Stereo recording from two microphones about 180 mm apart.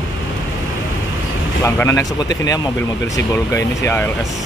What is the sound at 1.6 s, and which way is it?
Speech, 15° left (ahead or behind).